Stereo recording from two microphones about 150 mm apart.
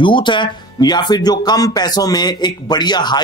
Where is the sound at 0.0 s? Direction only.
30° left (ahead or behind).